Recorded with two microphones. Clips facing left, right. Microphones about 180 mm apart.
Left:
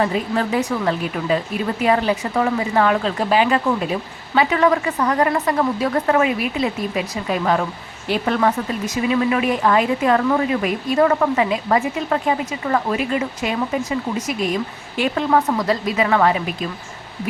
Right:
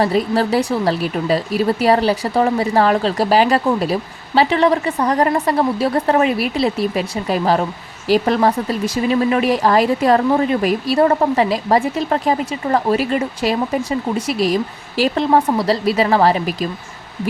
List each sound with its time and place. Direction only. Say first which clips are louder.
0.0 s speech: right 4 dB; 35° right (ahead or behind)
15.0 s speech: right 3 dB; 30° right (ahead or behind)